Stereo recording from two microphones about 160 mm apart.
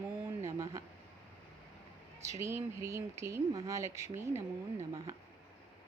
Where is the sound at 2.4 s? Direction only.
20° right (ahead or behind).